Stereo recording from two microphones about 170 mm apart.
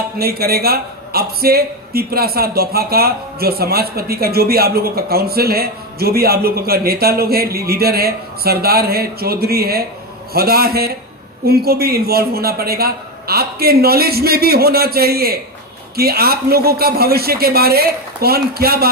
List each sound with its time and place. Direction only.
0.2 s a man's voice: 65° right (ahead or behind)